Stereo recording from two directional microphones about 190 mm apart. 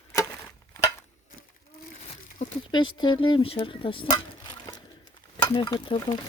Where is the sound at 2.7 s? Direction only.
25° left (ahead or behind).